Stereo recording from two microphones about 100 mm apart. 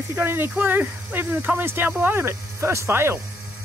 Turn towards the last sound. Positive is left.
turn(degrees=-25)  # may be behind; listen again after turning